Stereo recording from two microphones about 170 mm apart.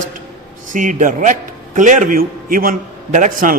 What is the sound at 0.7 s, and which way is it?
A man's voice, 50° right (ahead or behind).